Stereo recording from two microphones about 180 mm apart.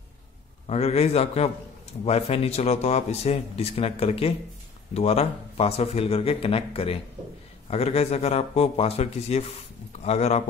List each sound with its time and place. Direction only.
0.7 s speech: 35° left (ahead or behind)